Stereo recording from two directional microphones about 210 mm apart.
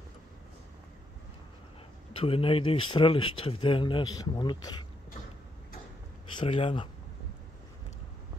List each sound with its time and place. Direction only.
2.1 s speech: 25° left (ahead or behind)
6.3 s speech: 25° left (ahead or behind)